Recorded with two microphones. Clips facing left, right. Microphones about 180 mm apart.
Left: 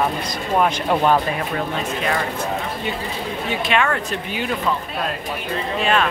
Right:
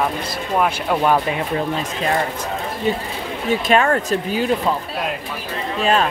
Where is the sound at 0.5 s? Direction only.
Centre (ahead or behind).